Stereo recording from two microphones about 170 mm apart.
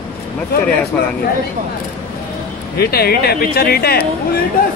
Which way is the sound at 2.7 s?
65° left (ahead or behind).